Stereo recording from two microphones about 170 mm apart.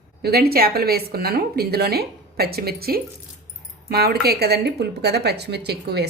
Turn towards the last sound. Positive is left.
turn(degrees=-75)  # may be behind; listen again after turning